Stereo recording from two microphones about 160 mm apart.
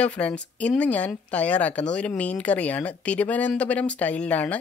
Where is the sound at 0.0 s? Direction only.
5° left (ahead or behind).